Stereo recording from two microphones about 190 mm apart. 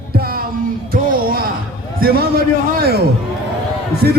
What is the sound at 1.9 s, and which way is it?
A man's voice, 50° right (ahead or behind).